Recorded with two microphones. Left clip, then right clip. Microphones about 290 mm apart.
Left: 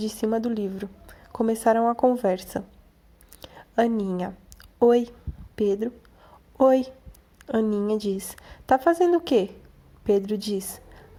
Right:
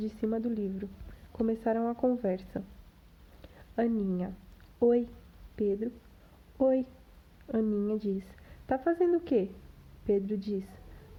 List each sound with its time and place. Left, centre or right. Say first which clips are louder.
0.0 s a woman's voice: left 8 dB; centre